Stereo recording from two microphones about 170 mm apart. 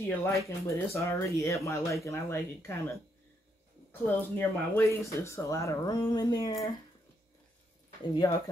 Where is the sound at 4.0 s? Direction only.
10° left (ahead or behind).